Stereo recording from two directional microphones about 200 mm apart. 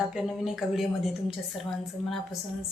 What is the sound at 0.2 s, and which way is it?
Speech, centre (ahead or behind).